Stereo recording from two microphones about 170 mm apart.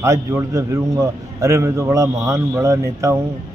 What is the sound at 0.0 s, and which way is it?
A man's voice, 15° right (ahead or behind).